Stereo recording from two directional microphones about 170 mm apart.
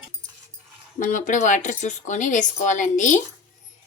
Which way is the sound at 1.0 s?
45° left (ahead or behind).